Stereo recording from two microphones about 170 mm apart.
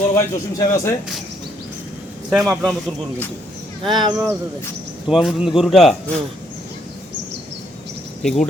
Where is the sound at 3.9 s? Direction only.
25° right (ahead or behind).